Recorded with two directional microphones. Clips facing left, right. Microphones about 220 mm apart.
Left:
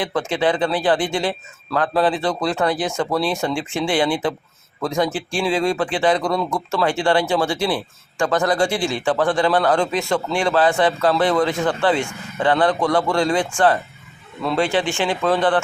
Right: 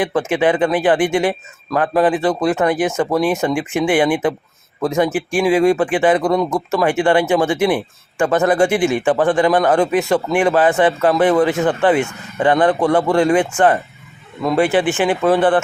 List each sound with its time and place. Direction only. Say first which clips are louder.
0.0 s speech: right 4 dB; 15° right (ahead or behind)